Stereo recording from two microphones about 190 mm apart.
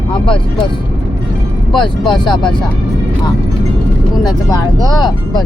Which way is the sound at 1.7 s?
25° left (ahead or behind).